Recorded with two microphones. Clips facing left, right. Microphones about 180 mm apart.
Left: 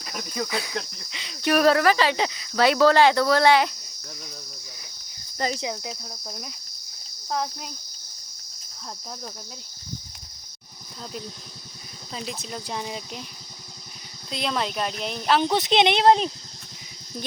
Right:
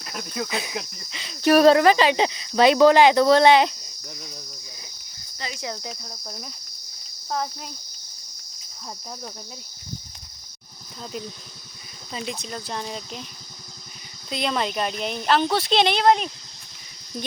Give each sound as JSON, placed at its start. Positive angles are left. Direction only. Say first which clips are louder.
{"t": 0.0, "sound": "cricket", "louder": "even", "side_deg": 0}
{"t": 0.4, "sound": "speech", "louder": "even", "side_deg": -20}
{"t": 1.5, "sound": "speech", "louder": "right 4 dB", "side_deg": -30}
{"t": 5.4, "sound": "cricket", "louder": "left 8 dB", "side_deg": 45}
{"t": 5.7, "sound": "speech", "louder": "even", "side_deg": 0}
{"t": 12.1, "sound": "speech", "louder": "right 2 dB", "side_deg": 0}
{"t": 14.3, "sound": "speech", "louder": "right 2 dB", "side_deg": 0}
{"t": 15.4, "sound": "speech", "louder": "left 2 dB", "side_deg": 20}